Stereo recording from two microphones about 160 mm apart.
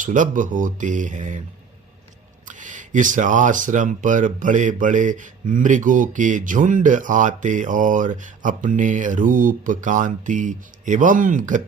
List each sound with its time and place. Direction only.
0.0 s speech: 55° right (ahead or behind)
2.5 s speech: 50° right (ahead or behind)